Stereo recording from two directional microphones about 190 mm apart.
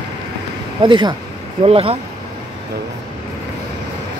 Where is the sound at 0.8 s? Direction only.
25° right (ahead or behind).